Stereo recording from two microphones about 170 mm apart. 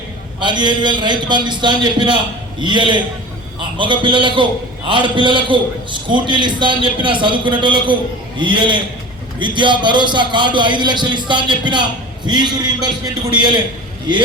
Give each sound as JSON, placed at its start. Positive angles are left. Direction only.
{"t": 0.3, "sound": "a man's voice", "side_deg": -25}